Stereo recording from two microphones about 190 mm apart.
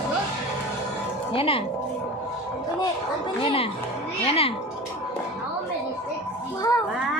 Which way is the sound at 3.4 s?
30° left (ahead or behind).